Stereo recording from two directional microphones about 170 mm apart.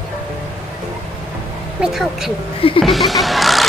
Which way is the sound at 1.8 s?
Centre (ahead or behind).